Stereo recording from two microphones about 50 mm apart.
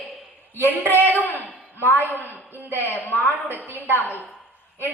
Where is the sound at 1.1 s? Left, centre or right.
Left.